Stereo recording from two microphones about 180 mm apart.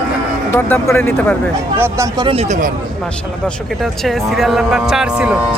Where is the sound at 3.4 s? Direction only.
Centre (ahead or behind).